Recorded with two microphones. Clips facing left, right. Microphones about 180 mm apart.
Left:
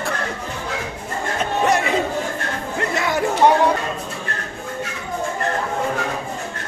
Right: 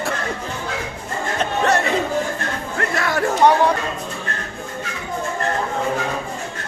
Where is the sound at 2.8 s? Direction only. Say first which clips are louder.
Even; 20° left (ahead or behind).